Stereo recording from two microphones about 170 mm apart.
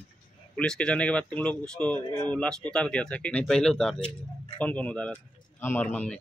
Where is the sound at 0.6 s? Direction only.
5° left (ahead or behind).